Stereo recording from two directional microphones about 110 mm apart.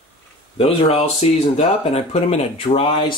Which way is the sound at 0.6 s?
65° left (ahead or behind).